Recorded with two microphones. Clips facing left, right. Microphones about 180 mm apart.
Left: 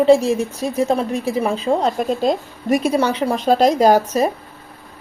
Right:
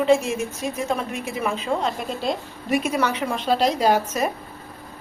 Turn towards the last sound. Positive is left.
turn(degrees=35)  # may be behind; listen again after turning